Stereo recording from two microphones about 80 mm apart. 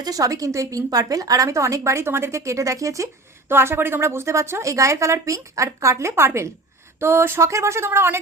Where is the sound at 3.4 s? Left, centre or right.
Right.